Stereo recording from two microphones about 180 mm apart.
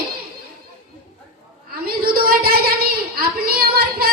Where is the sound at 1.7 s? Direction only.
55° right (ahead or behind).